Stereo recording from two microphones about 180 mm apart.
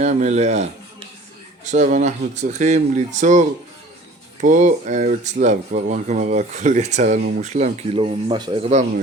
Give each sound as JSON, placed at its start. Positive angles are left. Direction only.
{"t": 0.0, "sound": "speech", "side_deg": -40}
{"t": 8.3, "sound": "a man's voice", "side_deg": -25}